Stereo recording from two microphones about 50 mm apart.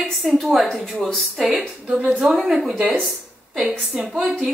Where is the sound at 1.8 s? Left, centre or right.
Right.